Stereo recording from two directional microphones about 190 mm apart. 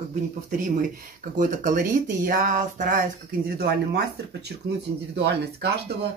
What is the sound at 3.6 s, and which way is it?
Speech, 60° right (ahead or behind).